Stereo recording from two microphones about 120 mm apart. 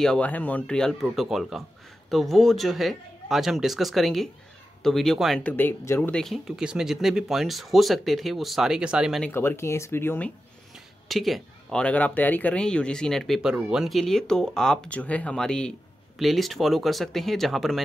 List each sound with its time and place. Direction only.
0.0 s speech: 10° left (ahead or behind)
5.4 s speech: 15° left (ahead or behind)
6.2 s speech: centre (ahead or behind)
9.3 s speech: 20° left (ahead or behind)
11.1 s speech: centre (ahead or behind)